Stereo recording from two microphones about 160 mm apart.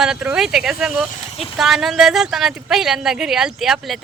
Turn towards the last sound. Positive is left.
turn(degrees=0)  # may be behind; listen again after turning